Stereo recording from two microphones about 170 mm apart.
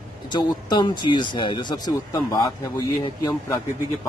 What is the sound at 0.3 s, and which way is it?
Speech, 25° left (ahead or behind).